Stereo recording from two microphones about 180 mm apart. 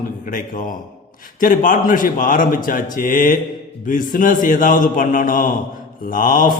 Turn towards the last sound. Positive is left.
turn(degrees=50)  # may be behind; listen again after turning